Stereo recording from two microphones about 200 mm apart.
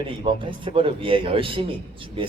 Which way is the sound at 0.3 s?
25° right (ahead or behind).